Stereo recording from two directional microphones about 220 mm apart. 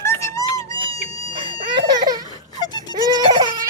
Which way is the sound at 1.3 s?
25° right (ahead or behind).